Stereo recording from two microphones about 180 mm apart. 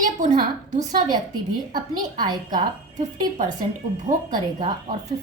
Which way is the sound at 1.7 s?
25° right (ahead or behind).